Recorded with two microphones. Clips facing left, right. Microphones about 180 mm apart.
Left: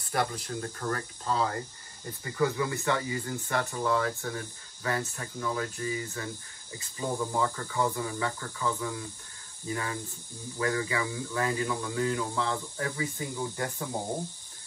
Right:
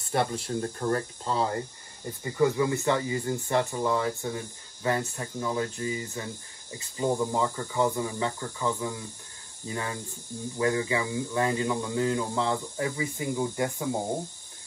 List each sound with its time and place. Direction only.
0.0 s speech: 25° right (ahead or behind)